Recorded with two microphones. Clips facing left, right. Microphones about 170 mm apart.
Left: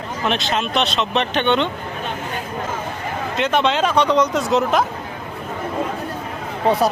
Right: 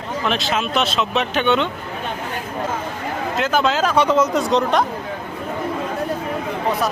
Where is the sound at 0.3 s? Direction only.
Centre (ahead or behind).